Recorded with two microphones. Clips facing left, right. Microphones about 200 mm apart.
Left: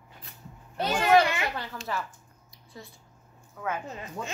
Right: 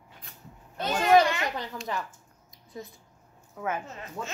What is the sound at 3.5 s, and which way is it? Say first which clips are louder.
Speech: right 1 dB; 20° right (ahead or behind).